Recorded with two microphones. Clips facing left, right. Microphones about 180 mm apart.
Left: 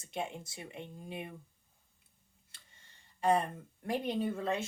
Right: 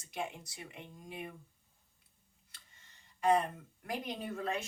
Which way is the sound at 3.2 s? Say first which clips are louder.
Even; 30° left (ahead or behind).